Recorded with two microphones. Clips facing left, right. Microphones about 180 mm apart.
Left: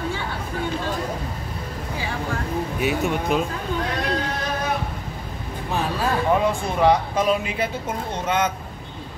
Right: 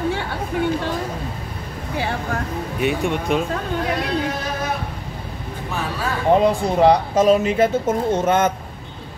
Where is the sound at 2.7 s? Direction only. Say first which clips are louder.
Right 3 dB; centre (ahead or behind).